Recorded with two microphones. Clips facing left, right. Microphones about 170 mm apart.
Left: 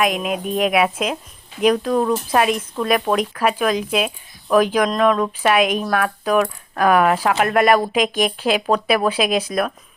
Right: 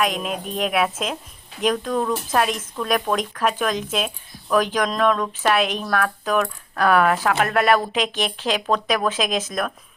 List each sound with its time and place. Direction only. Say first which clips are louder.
0.0 s coin: left 3 dB; 5° left (ahead or behind)
4.5 s speech: left 4 dB; 10° left (ahead or behind)
5.2 s coin: left 3 dB; 10° left (ahead or behind)
9.5 s speech: left 4 dB; 5° left (ahead or behind)